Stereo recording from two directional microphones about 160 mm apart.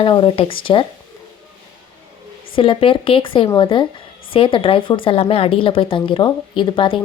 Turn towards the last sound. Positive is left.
turn(degrees=30)  # may be behind; listen again after turning